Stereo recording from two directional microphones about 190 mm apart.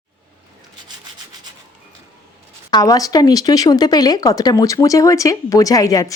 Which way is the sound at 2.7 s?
20° left (ahead or behind).